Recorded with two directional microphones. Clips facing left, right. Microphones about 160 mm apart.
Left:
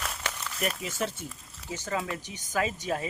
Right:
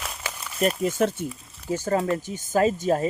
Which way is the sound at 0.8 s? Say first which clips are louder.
Right 10 dB; 50° right (ahead or behind).